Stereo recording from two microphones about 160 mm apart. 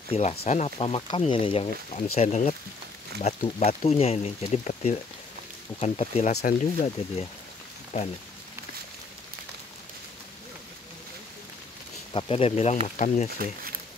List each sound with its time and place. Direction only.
0.1 s speech: 40° left (ahead or behind)
6.3 s speech: 55° left (ahead or behind)
7.9 s speech: 45° left (ahead or behind)
12.1 s speech: 35° left (ahead or behind); by 13.3 s 50° left (ahead or behind)